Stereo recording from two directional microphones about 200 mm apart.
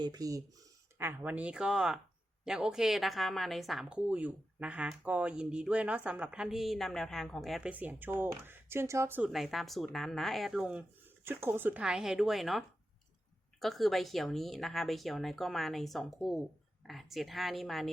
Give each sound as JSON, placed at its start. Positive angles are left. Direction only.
{"t": 0.0, "sound": "a woman's voice", "side_deg": -20}